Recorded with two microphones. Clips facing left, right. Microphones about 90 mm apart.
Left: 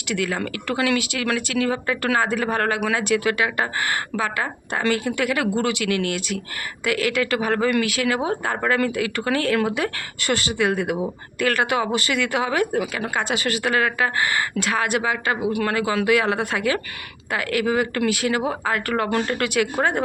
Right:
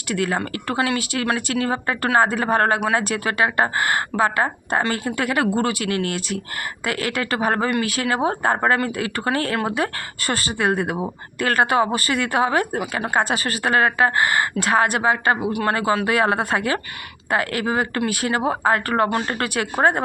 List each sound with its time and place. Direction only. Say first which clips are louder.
0.1 s speech: right 2 dB; 40° right (ahead or behind)
13.1 s speech: right 2 dB; 40° right (ahead or behind)
19.0 s speech: even; 30° right (ahead or behind)